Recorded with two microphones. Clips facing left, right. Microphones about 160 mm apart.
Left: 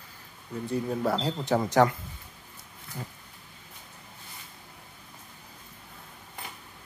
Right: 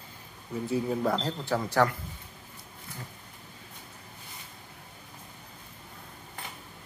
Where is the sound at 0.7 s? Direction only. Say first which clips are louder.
Even; centre (ahead or behind); by 1.9 s 20° left (ahead or behind).